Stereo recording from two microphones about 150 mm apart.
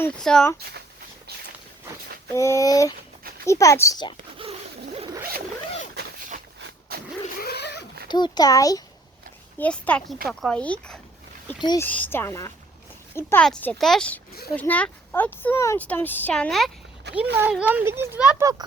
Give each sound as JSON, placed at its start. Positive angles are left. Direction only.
{"t": 0.2, "sound": "speech", "side_deg": 5}
{"t": 2.3, "sound": "a child's voice", "side_deg": 20}
{"t": 6.0, "sound": "a sound", "side_deg": -65}
{"t": 7.3, "sound": "a sound", "side_deg": 90}
{"t": 8.0, "sound": "a child's voice", "side_deg": 30}
{"t": 9.6, "sound": "speech", "side_deg": 10}
{"t": 13.4, "sound": "a child's voice", "side_deg": 10}